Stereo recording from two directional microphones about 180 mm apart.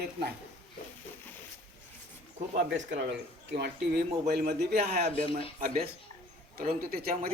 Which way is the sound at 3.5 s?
60° right (ahead or behind).